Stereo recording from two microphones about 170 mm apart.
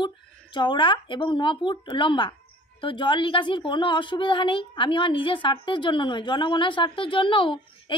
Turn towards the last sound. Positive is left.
turn(degrees=30)  # may be behind; listen again after turning